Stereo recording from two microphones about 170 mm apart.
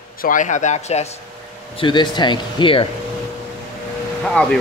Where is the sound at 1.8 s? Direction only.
25° left (ahead or behind).